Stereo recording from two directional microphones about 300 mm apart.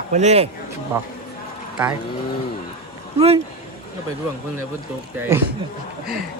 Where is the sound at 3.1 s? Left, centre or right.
Centre.